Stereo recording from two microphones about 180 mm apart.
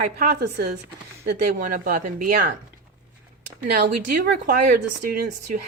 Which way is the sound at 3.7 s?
60° right (ahead or behind).